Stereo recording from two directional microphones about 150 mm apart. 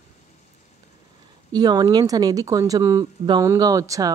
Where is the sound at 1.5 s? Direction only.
25° right (ahead or behind).